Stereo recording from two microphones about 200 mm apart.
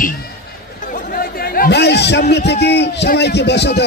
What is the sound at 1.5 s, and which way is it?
A man's voice, 50° left (ahead or behind).